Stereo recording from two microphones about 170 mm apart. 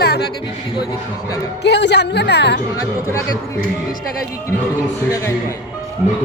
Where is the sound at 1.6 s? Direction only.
90° left.